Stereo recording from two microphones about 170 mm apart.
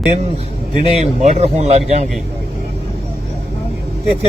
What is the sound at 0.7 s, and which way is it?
A man's voice, 40° right (ahead or behind).